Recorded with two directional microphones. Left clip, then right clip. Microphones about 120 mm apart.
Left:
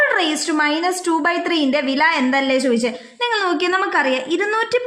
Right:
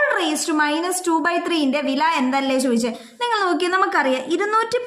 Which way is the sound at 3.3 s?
15° left (ahead or behind).